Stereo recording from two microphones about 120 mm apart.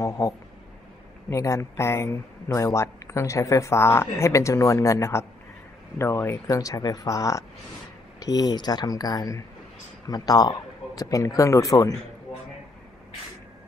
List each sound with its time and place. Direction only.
0.2 s speech: 30° left (ahead or behind)